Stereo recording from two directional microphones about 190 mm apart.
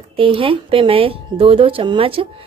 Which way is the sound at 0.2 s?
30° right (ahead or behind).